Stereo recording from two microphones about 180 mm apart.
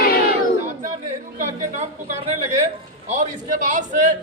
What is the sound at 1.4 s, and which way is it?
A woman's voice, 40° right (ahead or behind).